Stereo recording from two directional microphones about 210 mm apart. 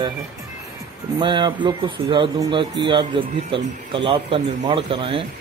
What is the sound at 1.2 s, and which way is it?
Speech, 20° right (ahead or behind).